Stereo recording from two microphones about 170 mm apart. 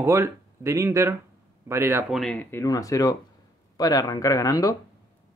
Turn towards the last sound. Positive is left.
turn(degrees=20)  # may be behind; listen again after turning